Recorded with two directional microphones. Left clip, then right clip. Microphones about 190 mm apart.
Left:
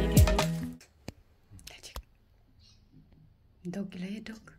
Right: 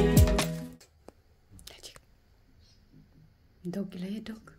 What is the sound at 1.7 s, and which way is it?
Whispering, 25° right (ahead or behind).